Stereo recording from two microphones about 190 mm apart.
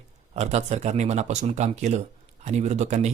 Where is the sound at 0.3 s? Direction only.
35° right (ahead or behind).